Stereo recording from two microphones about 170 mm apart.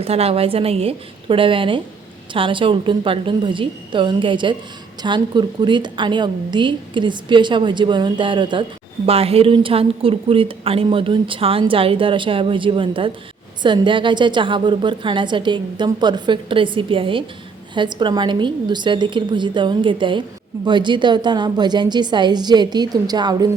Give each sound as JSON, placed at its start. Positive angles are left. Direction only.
{"t": 0.0, "sound": "a woman's voice", "side_deg": -35}